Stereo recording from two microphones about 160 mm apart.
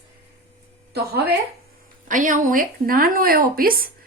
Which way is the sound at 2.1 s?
55° right (ahead or behind).